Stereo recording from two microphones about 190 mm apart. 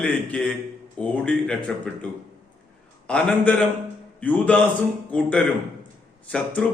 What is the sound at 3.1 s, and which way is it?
A man's voice, 5° left (ahead or behind).